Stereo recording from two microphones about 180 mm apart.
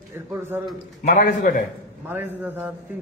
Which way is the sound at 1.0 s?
45° left (ahead or behind).